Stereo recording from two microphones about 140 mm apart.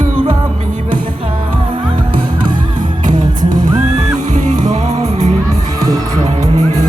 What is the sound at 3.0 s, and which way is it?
Music, 65° right (ahead or behind).